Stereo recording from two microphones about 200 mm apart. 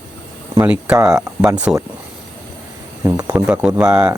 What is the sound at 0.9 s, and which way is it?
Speech, 15° right (ahead or behind).